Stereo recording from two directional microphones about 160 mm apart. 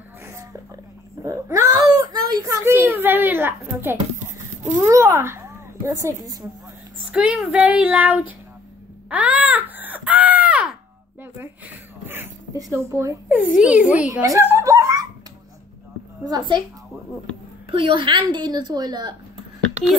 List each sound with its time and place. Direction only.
0.3 s a sound: 20° right (ahead or behind)
1.2 s a child's voice: 20° right (ahead or behind)
7.1 s speech: 5° right (ahead or behind)
9.1 s baby cry: 10° right (ahead or behind)
11.3 s a sound: 10° right (ahead or behind)
12.7 s speech: 15° right (ahead or behind)
14.2 s chuckle: 15° right (ahead or behind)
16.3 s a woman's voice: 25° right (ahead or behind)
17.6 s a woman's voice: 35° right (ahead or behind)